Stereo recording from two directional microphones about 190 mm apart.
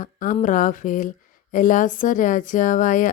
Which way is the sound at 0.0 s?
45° left (ahead or behind).